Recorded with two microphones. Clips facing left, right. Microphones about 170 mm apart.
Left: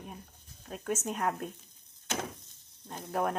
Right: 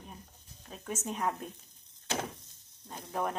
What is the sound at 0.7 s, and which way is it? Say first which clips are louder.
Speech: left 4 dB; 5° left (ahead or behind).